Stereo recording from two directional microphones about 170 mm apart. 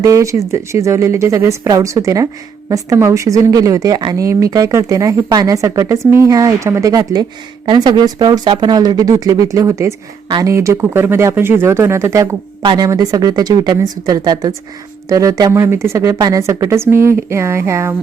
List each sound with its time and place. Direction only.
0.0 s speech: 20° right (ahead or behind)